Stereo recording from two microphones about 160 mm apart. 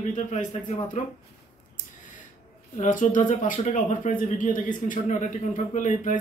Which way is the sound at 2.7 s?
50° left (ahead or behind).